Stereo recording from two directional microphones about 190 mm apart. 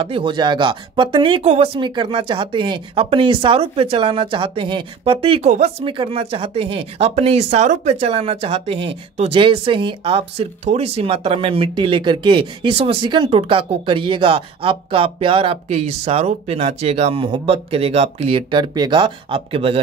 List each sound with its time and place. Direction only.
0.0 s speech: 25° right (ahead or behind)